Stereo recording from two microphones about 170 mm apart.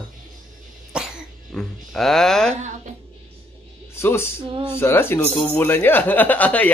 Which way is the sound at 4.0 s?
15° left (ahead or behind).